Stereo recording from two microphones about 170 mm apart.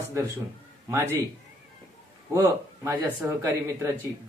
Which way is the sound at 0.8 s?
15° right (ahead or behind).